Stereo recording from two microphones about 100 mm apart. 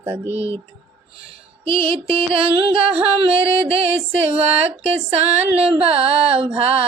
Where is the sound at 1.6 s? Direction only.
65° right (ahead or behind).